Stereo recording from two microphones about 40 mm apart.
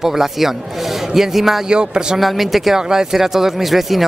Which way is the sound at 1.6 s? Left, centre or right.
Right.